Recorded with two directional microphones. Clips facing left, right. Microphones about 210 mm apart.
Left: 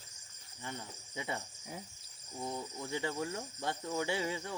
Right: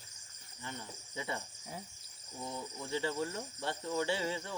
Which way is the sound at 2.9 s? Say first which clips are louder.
Right 2 dB; 15° left (ahead or behind).